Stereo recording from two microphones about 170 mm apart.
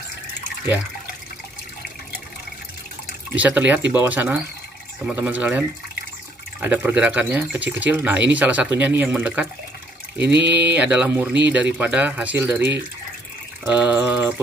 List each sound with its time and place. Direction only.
3.3 s speech: 10° right (ahead or behind)
10.4 s speech: 85° right
10.7 s speech: 10° right (ahead or behind)